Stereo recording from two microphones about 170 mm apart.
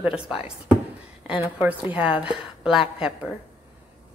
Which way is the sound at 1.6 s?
10° right (ahead or behind).